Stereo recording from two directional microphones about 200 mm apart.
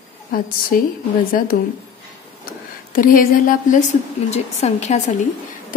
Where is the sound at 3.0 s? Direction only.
45° left (ahead or behind).